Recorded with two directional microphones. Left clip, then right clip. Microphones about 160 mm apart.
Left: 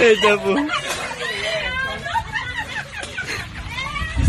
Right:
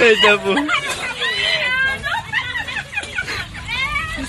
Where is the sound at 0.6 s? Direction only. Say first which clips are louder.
Right 3 dB; 25° right (ahead or behind).